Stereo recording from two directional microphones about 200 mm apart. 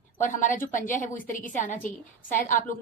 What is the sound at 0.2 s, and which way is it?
A woman's voice, 40° left (ahead or behind).